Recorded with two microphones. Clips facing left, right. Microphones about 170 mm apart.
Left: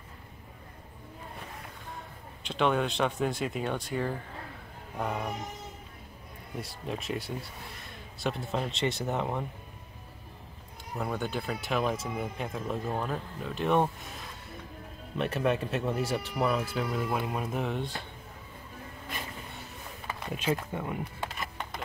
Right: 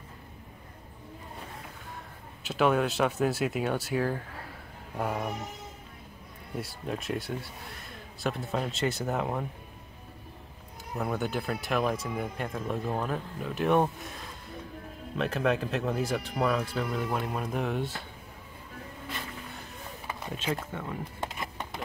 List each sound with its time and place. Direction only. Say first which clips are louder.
2.4 s speech: right 2 dB; 5° right (ahead or behind)
4.9 s a sound: right 1 dB; 5° right (ahead or behind)
6.6 s speech: right 1 dB; centre (ahead or behind)
11.0 s speech: right 2 dB; centre (ahead or behind)
15.1 s speech: right 1 dB; centre (ahead or behind)
20.2 s speech: left 3 dB; 10° left (ahead or behind)
21.2 s a sound: right 1 dB; 20° right (ahead or behind)